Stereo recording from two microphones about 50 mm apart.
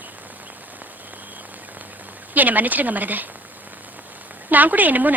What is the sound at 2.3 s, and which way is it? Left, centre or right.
Speech, right.